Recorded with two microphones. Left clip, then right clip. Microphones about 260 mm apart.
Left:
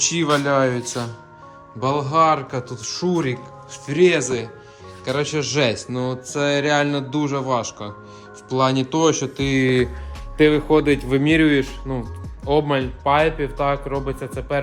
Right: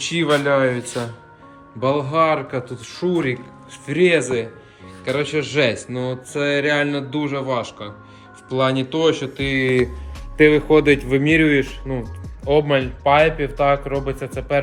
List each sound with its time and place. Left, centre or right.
0.1 s speech: centre
1.8 s speech: centre
9.6 s speech: left
10.3 s speech: centre